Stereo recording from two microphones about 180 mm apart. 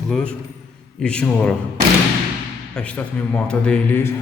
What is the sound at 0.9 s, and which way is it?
Speech, 5° left (ahead or behind).